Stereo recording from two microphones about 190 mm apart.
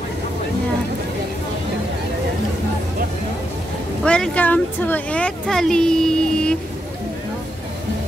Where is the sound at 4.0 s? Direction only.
5° left (ahead or behind).